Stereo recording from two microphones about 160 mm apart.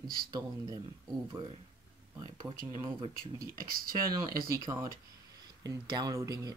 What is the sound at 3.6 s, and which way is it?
Speech, 65° right (ahead or behind).